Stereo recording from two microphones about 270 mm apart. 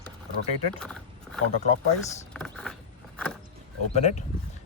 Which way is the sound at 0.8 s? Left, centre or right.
Centre.